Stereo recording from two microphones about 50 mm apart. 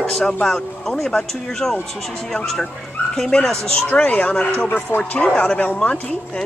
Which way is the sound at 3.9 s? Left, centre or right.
Left.